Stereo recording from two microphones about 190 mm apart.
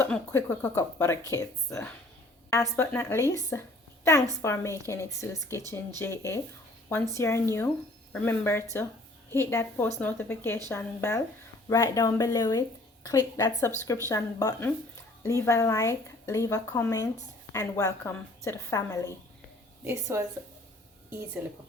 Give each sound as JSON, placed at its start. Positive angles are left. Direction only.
{"t": 0.0, "sound": "a woman's voice", "side_deg": 10}
{"t": 19.8, "sound": "a woman's voice", "side_deg": -15}
{"t": 21.4, "sound": "a woman's voice", "side_deg": -10}